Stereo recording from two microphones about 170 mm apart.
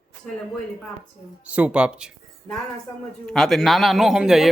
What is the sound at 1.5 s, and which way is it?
Speech, 5° right (ahead or behind).